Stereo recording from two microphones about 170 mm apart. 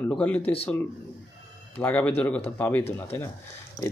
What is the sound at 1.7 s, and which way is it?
Speech, 10° left (ahead or behind).